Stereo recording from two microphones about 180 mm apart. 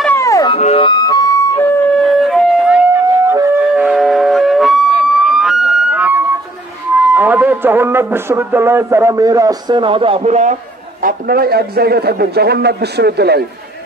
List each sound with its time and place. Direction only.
0.0 s music: 15° left (ahead or behind)
0.5 s music: 30° left (ahead or behind)
2.0 s wind instrument: centre (ahead or behind)
3.7 s a sound: 5° right (ahead or behind)
7.2 s a man's voice: 10° right (ahead or behind); by 13.4 s 65° right (ahead or behind)